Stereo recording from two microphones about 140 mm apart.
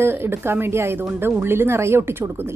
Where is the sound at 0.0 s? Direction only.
15° right (ahead or behind).